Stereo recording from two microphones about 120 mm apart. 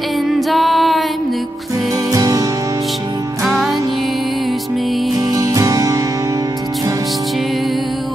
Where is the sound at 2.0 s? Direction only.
30° right (ahead or behind).